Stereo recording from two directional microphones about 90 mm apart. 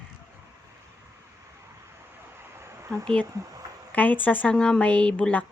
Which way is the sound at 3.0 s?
10° left (ahead or behind).